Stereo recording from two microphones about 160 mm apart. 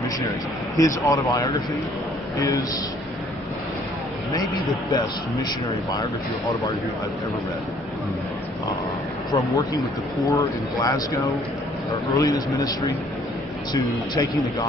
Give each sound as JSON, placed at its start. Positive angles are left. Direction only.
{"t": 0.7, "sound": "a man's voice", "side_deg": 20}
{"t": 4.8, "sound": "speech", "side_deg": 25}
{"t": 10.2, "sound": "speech", "side_deg": 20}